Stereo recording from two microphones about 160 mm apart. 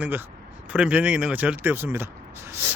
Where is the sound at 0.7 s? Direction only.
5° right (ahead or behind).